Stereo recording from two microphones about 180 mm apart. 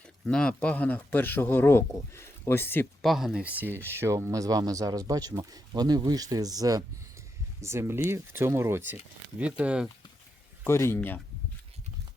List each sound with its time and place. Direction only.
0.3 s speech: 5° left (ahead or behind)
3.0 s speech: centre (ahead or behind)
10.6 s speech: 15° left (ahead or behind)